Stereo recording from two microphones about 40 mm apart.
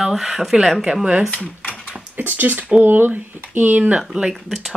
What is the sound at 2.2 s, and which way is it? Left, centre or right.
Speech, right.